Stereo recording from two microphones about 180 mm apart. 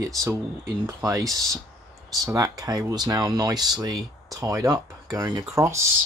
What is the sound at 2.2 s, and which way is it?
Speech, 20° right (ahead or behind).